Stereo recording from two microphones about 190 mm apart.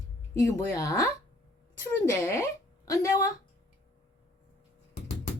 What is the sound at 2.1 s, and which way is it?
A woman's voice, 15° left (ahead or behind).